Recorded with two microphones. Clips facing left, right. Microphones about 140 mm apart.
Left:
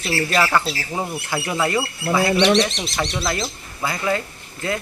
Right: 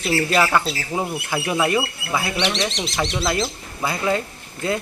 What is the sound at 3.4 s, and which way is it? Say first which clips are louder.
Speech: right 1 dB; 15° right (ahead or behind).